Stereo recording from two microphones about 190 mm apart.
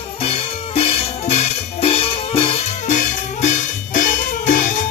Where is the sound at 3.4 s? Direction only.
45° left (ahead or behind).